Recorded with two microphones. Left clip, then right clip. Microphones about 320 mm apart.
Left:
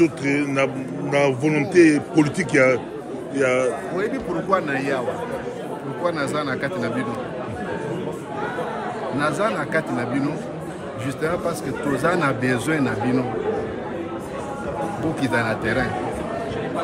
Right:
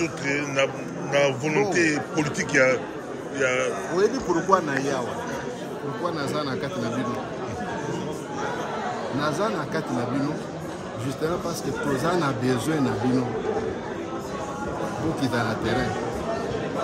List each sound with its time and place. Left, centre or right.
0.0 s a man's voice: left
3.9 s a man's voice: centre
6.0 s a man's voice: centre
9.2 s a man's voice: centre
12.0 s a man's voice: centre
15.1 s a man's voice: centre